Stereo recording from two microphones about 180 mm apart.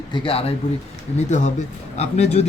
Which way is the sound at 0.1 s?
30° left (ahead or behind).